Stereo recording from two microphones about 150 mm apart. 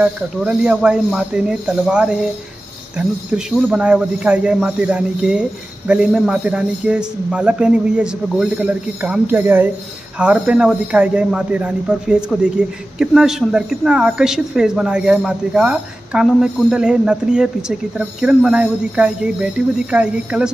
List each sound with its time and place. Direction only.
0.0 s a man's voice: 5° right (ahead or behind)